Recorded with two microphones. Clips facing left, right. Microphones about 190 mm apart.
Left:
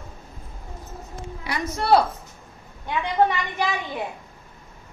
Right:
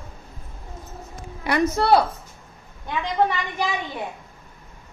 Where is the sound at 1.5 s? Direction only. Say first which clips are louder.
Right 8 dB; 50° right (ahead or behind).